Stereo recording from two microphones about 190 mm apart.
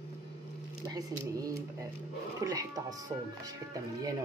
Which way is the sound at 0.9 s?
20° right (ahead or behind).